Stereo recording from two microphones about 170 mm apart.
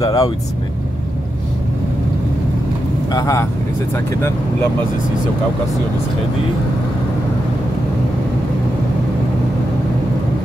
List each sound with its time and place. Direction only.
0.0 s speech: 20° left (ahead or behind)
3.1 s speech: 20° left (ahead or behind)